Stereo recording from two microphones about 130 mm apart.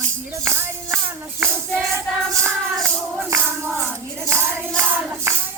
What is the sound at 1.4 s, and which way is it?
Music, 20° right (ahead or behind).